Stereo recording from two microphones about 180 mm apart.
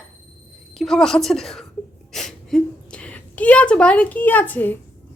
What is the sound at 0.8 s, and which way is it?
Speech, centre (ahead or behind).